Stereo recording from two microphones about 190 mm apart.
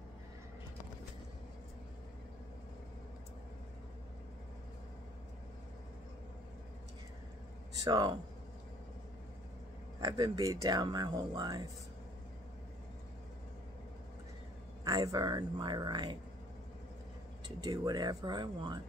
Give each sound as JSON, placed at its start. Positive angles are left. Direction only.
{"t": 7.8, "sound": "speech", "side_deg": -20}
{"t": 9.9, "sound": "speech", "side_deg": -20}
{"t": 14.9, "sound": "speech", "side_deg": -20}
{"t": 17.6, "sound": "speech", "side_deg": -20}